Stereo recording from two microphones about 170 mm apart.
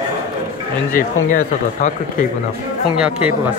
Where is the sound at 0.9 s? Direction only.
50° left (ahead or behind).